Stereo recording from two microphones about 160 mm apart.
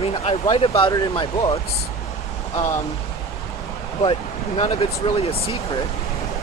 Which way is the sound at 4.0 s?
35° left (ahead or behind).